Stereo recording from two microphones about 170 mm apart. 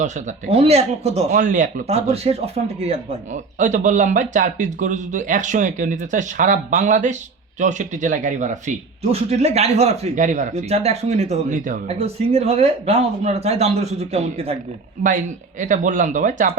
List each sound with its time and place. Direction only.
0.5 s speech: 35° right (ahead or behind)
15.0 s speech: 45° right (ahead or behind)